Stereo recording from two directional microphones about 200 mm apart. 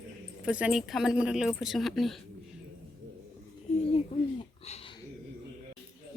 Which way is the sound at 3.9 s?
30° left (ahead or behind).